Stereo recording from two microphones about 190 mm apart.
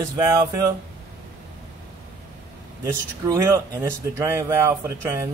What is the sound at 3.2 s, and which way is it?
Speech, 15° right (ahead or behind).